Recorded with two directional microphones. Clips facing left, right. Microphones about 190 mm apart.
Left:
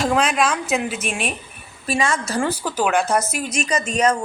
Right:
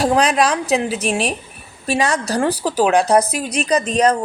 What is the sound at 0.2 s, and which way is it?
A woman's voice, 35° right (ahead or behind).